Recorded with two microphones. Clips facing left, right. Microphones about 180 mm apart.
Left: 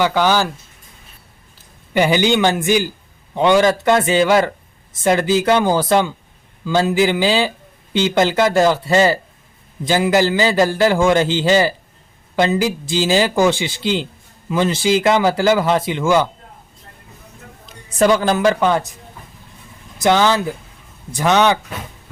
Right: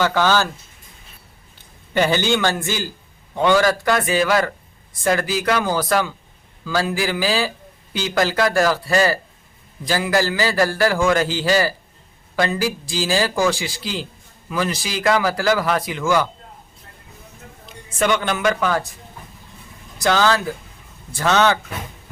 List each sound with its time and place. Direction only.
0.0 s a man's voice: 15° left (ahead or behind)
1.9 s a man's voice: 15° left (ahead or behind)
17.8 s speech: 35° left (ahead or behind)
20.0 s a man's voice: 20° left (ahead or behind)